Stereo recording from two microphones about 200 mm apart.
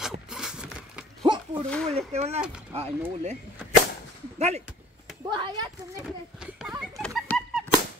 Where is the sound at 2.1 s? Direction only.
30° right (ahead or behind).